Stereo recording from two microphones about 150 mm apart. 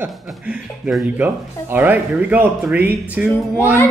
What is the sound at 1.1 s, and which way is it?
Speech, 15° right (ahead or behind).